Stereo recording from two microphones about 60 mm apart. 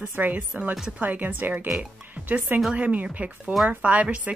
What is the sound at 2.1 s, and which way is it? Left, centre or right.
Music, right.